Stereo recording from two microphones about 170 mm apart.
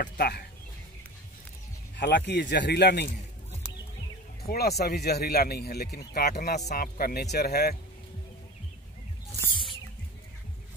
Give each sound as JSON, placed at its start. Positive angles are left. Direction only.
{"t": 0.2, "sound": "speech", "side_deg": 70}
{"t": 2.0, "sound": "speech", "side_deg": 90}
{"t": 4.5, "sound": "speech", "side_deg": 70}
{"t": 6.7, "sound": "speech", "side_deg": 60}